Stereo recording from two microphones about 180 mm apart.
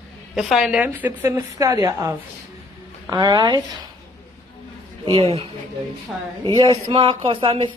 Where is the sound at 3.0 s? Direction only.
20° right (ahead or behind).